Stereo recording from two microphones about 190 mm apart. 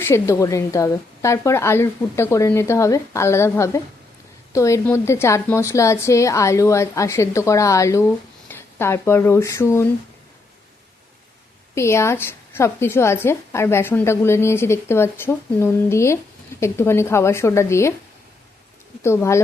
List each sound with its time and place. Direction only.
0.0 s a woman's voice: 15° left (ahead or behind)
11.7 s a woman's voice: 15° left (ahead or behind)
19.0 s a woman's voice: 15° left (ahead or behind)